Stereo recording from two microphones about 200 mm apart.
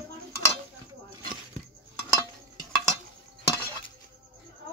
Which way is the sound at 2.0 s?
15° left (ahead or behind).